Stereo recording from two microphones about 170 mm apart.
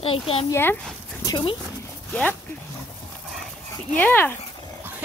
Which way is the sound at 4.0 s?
10° left (ahead or behind).